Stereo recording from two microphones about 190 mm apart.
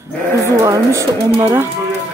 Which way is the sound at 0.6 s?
15° right (ahead or behind).